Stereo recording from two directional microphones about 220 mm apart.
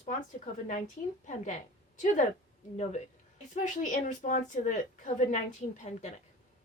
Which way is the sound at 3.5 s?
35° left (ahead or behind).